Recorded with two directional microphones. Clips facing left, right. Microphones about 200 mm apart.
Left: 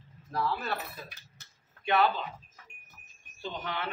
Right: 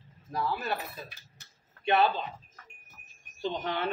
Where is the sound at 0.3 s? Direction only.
15° right (ahead or behind).